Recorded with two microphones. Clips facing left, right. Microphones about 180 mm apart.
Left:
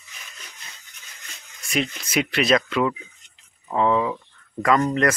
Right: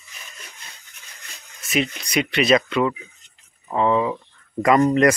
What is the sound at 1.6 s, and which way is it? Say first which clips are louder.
Speech: right 2 dB; centre (ahead or behind).